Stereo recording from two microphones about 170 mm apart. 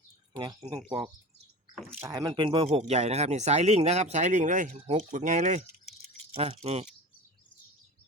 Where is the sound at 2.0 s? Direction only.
20° right (ahead or behind); by 6.9 s 40° right (ahead or behind).